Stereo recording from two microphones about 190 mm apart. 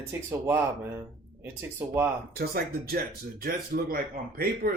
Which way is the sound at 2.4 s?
55° right (ahead or behind).